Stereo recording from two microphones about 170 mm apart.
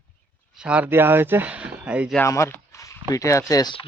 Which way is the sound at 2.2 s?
15° left (ahead or behind).